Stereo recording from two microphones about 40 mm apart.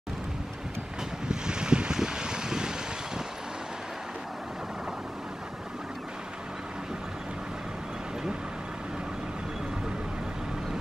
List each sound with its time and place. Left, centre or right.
1.3 s boat: right